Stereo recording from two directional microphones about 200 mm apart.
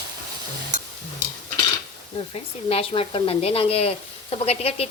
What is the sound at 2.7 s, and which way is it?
Speech, 30° left (ahead or behind).